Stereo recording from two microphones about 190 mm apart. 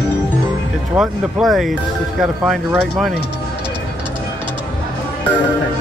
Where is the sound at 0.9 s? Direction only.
Centre (ahead or behind).